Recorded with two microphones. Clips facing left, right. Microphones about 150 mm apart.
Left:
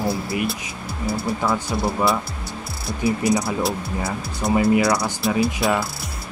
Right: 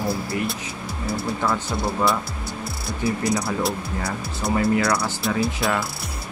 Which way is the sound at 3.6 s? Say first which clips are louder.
Left 1 dB; centre (ahead or behind).